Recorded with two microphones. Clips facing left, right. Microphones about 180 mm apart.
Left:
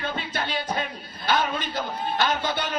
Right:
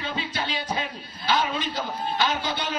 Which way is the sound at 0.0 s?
55° left (ahead or behind).